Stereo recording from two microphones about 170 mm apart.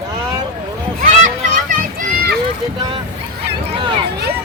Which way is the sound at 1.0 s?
50° right (ahead or behind).